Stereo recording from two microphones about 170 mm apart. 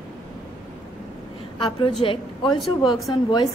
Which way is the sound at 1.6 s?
30° left (ahead or behind).